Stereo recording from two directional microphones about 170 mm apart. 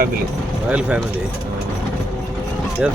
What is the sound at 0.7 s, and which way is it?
Speech, 5° right (ahead or behind).